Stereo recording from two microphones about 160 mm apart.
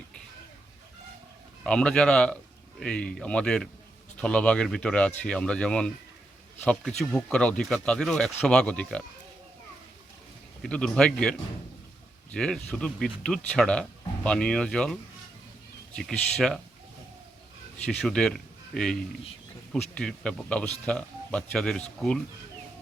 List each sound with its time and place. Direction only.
1.6 s speech: 5° left (ahead or behind)
10.6 s speech: 5° left (ahead or behind)
16.0 s speech: 5° left (ahead or behind)
17.8 s speech: 5° left (ahead or behind)